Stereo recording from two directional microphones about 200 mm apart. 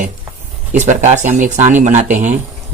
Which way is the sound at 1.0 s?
40° right (ahead or behind).